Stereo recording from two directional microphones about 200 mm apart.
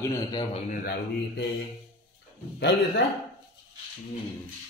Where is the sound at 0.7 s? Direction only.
50° left (ahead or behind).